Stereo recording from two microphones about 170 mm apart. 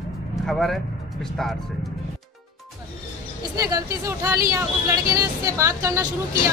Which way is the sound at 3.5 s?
20° right (ahead or behind).